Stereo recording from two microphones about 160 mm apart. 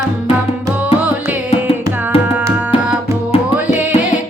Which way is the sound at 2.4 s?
10° right (ahead or behind).